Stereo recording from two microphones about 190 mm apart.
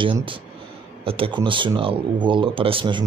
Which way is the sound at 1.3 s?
25° right (ahead or behind).